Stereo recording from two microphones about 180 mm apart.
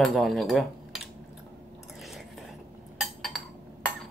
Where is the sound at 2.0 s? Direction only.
Centre (ahead or behind).